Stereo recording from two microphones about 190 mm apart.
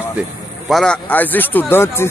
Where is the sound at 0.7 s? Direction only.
5° left (ahead or behind).